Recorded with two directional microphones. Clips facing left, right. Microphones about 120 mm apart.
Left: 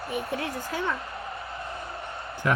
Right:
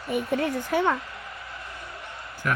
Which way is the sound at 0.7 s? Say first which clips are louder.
Right 7 dB; 60° right (ahead or behind).